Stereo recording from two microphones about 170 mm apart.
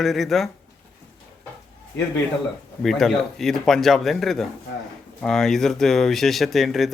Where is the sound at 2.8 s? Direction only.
Centre (ahead or behind).